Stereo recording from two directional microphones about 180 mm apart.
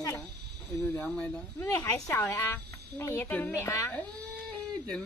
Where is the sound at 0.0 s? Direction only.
10° left (ahead or behind).